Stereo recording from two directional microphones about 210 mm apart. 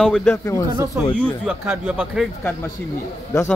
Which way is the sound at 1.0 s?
10° right (ahead or behind).